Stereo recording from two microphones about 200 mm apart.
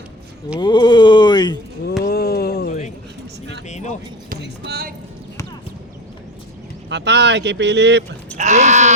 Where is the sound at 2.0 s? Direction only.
55° left (ahead or behind).